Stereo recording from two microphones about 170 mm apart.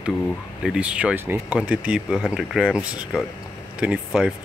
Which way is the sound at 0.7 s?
5° right (ahead or behind).